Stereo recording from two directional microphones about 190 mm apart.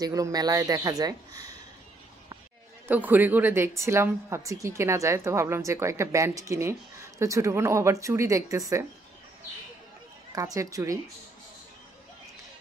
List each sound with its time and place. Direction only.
0.0 s speech: 20° right (ahead or behind)
2.9 s a woman's voice: 10° right (ahead or behind)
10.3 s a woman's voice: 15° right (ahead or behind)